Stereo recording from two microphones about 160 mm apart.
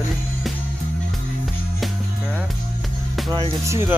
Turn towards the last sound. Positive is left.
turn(degrees=-15)  # may be behind; listen again after turning